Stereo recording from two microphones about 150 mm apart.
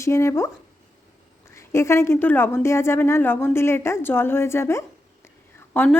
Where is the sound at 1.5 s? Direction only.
20° left (ahead or behind).